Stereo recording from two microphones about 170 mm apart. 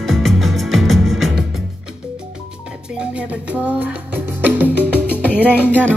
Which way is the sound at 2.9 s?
5° right (ahead or behind).